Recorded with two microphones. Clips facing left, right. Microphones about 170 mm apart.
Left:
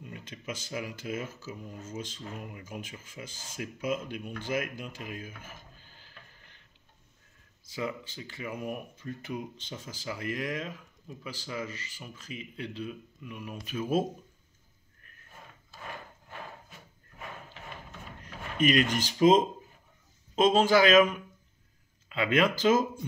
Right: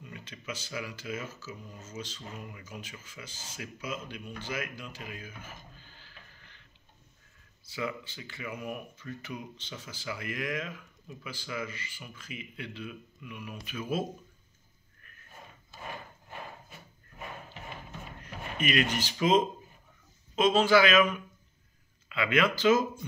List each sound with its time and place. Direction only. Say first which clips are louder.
0.0 s speech: left 3 dB; 45° left (ahead or behind)
5.8 s mechanisms: even; 45° left (ahead or behind)
7.7 s speech: left 1 dB; 40° left (ahead or behind)
18.6 s speech: left 4 dB; 40° left (ahead or behind)
20.3 s speech: left 1 dB; 40° left (ahead or behind)
22.1 s speech: left 1 dB; 40° left (ahead or behind)